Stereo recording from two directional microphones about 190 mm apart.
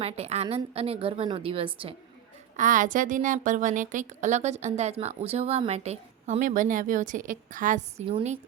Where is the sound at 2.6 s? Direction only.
45° right (ahead or behind).